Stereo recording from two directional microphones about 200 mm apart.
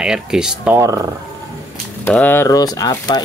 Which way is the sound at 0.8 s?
15° right (ahead or behind).